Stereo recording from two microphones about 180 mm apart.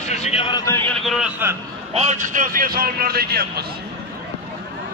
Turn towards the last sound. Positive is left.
turn(degrees=-60)  # may be behind; listen again after turning